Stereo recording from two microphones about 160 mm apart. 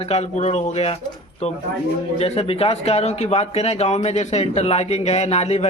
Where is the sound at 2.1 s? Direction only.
40° left (ahead or behind).